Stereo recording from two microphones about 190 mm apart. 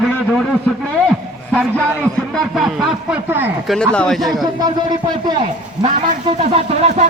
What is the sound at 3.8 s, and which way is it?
Speech, 5° left (ahead or behind).